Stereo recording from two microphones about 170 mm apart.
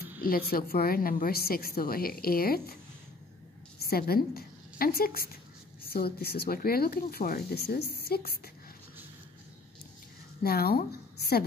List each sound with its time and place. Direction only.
0.2 s a woman's voice: 60° left (ahead or behind)
3.8 s a woman's voice: 65° left (ahead or behind)
10.4 s speech: 65° left (ahead or behind)